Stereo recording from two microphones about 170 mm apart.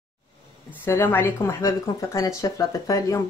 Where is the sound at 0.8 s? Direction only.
15° left (ahead or behind).